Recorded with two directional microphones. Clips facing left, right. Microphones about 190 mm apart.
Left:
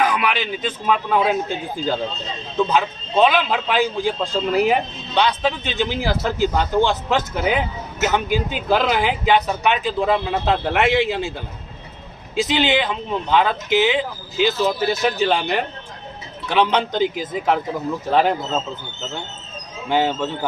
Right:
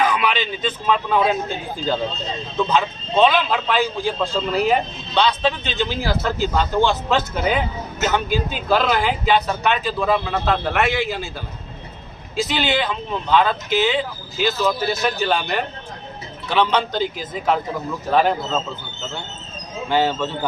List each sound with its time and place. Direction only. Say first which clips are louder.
0.0 s a man's voice: even; 10° left (ahead or behind)
2.6 s a man's voice: even; 10° left (ahead or behind)
12.4 s a man's voice: left 2 dB; 20° left (ahead or behind)
19.9 s a man's voice: even; 15° left (ahead or behind)